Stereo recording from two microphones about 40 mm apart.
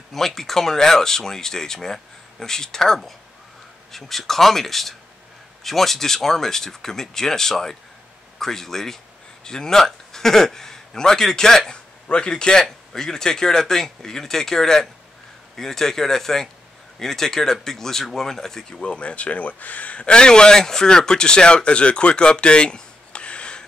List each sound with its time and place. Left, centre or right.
0.1 s a man's voice: centre
11.7 s a man's voice: left
18.8 s speech: left